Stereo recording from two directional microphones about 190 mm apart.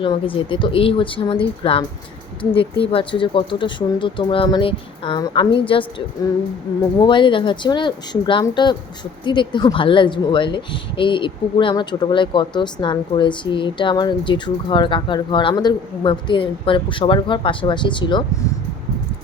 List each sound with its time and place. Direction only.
0.0 s speech: 25° left (ahead or behind)
7.0 s speech: 25° left (ahead or behind)